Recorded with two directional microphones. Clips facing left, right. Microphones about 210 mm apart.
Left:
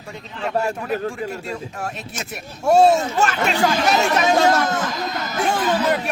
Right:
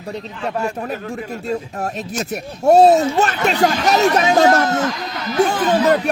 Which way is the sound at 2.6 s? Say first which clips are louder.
Right 4 dB; 35° right (ahead or behind).